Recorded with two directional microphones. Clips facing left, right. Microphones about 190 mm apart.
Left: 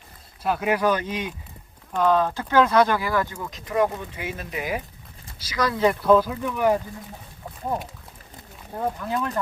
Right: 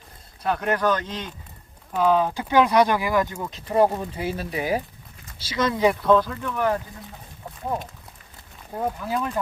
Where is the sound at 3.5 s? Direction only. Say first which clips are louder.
Right 3 dB; 30° right (ahead or behind).